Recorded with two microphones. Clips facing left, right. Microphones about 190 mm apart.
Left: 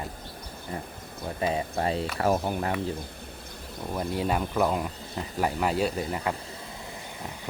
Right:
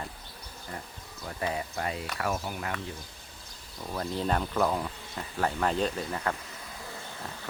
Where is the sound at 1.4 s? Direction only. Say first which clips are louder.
Left 5 dB; 25° left (ahead or behind).